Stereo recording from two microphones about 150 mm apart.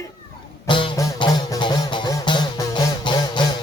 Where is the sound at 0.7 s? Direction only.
30° left (ahead or behind).